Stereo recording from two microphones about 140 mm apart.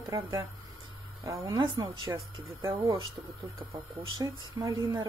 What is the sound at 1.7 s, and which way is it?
Speech, 35° right (ahead or behind).